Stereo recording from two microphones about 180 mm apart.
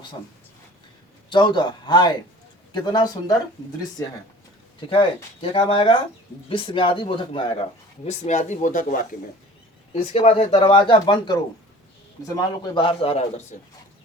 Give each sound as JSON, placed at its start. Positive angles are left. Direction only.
{"t": 1.3, "sound": "speech", "side_deg": 25}
{"t": 4.9, "sound": "speech", "side_deg": 30}
{"t": 9.9, "sound": "speech", "side_deg": 35}
{"t": 12.4, "sound": "speech", "side_deg": 25}